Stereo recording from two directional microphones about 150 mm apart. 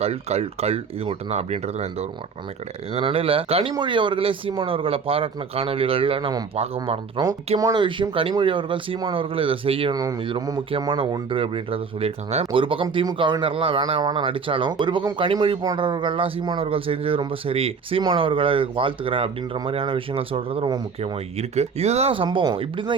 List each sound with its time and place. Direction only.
0.0 s speech: 45° right (ahead or behind)
9.9 s speech: 25° right (ahead or behind)
10.2 s speech: 35° right (ahead or behind)
21.0 s speech: 45° right (ahead or behind)